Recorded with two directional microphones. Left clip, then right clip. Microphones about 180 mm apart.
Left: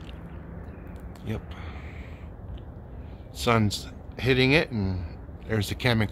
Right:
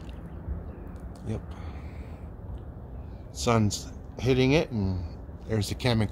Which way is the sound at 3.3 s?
5° right (ahead or behind).